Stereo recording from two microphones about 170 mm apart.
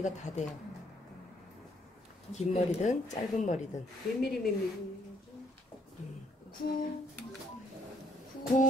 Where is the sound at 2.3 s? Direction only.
40° left (ahead or behind).